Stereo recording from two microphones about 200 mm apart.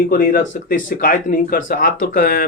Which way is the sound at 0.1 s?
45° left (ahead or behind).